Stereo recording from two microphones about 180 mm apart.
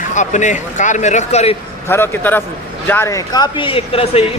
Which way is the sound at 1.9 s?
10° left (ahead or behind).